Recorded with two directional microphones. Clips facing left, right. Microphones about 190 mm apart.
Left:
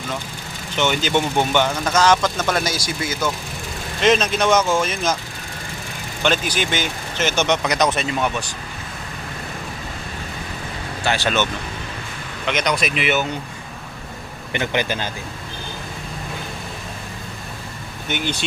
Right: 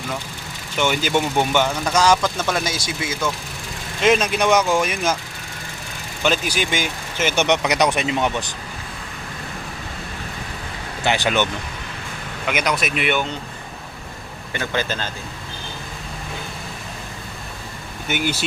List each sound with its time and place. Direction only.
0.8 s speech: 10° right (ahead or behind)
4.0 s speech: 10° right (ahead or behind)
6.2 s speech: 10° right (ahead or behind)
11.0 s speech: 15° right (ahead or behind)
12.5 s speech: 5° right (ahead or behind)
14.5 s speech: 20° left (ahead or behind)
18.1 s speech: 5° right (ahead or behind)